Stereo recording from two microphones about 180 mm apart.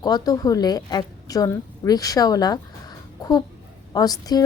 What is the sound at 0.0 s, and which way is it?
A woman's voice, 20° left (ahead or behind).